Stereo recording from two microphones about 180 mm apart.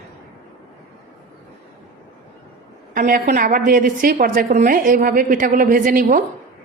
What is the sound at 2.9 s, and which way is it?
A woman's voice, 45° right (ahead or behind).